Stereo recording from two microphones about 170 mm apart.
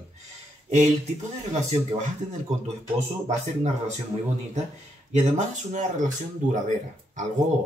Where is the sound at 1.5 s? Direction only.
45° right (ahead or behind).